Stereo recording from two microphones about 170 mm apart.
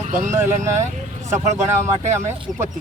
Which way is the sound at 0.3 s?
15° right (ahead or behind).